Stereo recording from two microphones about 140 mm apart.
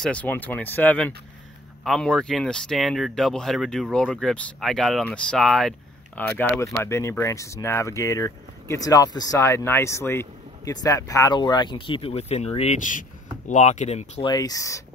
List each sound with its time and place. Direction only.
0.0 s speech: 10° left (ahead or behind)
6.8 s speech: 20° left (ahead or behind); by 14.2 s 55° left (ahead or behind)
14.2 s speech: 25° left (ahead or behind)